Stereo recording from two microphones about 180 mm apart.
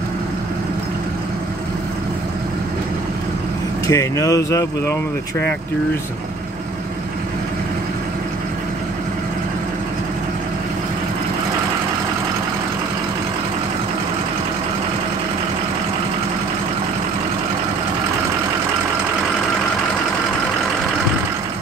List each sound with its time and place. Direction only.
3.8 s speech: 20° left (ahead or behind)